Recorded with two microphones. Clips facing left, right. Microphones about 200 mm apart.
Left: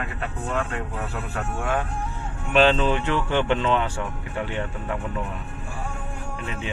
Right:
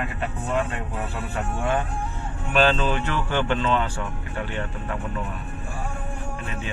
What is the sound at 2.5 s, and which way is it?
Speech, 20° left (ahead or behind).